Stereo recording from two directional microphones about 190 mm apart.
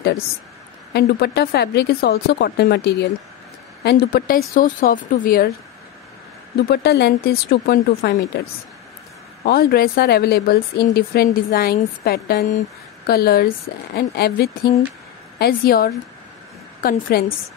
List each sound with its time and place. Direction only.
0.9 s speech: 60° left (ahead or behind)
6.5 s speech: 60° left (ahead or behind)
9.4 s speech: 55° left (ahead or behind)